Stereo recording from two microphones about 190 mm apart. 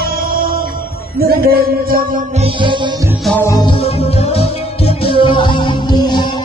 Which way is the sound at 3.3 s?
15° left (ahead or behind).